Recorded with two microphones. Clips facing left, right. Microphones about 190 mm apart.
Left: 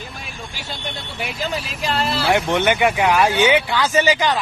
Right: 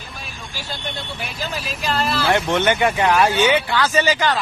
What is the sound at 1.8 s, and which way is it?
Speech, 25° left (ahead or behind).